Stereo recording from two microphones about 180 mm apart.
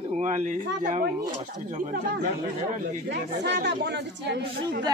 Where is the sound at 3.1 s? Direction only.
70° right (ahead or behind).